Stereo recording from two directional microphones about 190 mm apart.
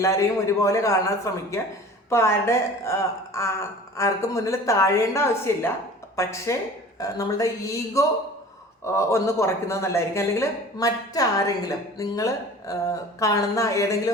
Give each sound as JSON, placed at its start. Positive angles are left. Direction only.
{"t": 0.0, "sound": "speech", "side_deg": 15}